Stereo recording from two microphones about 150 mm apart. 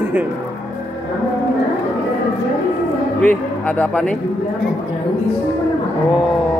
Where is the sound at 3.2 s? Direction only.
10° left (ahead or behind).